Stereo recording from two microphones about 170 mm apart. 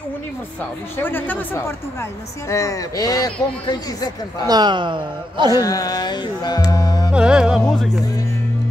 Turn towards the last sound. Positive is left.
turn(degrees=0)  # may be behind; listen again after turning